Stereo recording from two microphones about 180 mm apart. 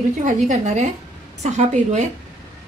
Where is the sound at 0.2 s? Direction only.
45° right (ahead or behind).